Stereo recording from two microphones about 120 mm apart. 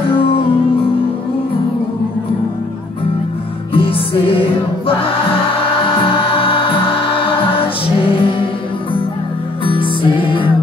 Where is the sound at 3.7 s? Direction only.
50° left (ahead or behind).